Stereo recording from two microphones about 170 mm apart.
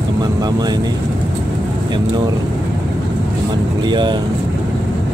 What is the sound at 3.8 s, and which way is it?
Speech, 25° right (ahead or behind).